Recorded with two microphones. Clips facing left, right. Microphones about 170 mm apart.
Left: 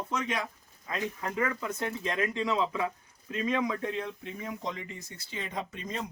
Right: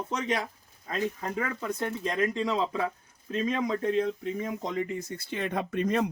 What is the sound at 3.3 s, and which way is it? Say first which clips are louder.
Speech: right 2 dB; 35° right (ahead or behind).